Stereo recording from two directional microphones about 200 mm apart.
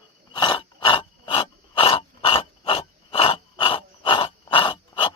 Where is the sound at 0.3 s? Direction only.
25° left (ahead or behind).